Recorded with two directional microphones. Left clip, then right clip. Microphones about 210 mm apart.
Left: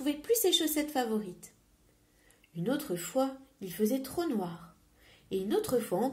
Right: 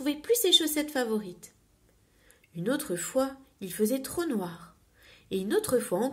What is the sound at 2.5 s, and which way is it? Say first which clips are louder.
Speech: right 3 dB; 30° right (ahead or behind).